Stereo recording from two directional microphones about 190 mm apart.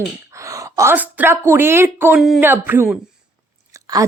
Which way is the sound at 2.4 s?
10° right (ahead or behind).